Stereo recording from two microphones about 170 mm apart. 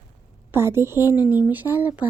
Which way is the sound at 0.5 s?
15° right (ahead or behind).